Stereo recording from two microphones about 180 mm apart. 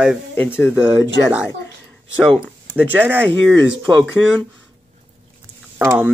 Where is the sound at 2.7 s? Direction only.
10° right (ahead or behind).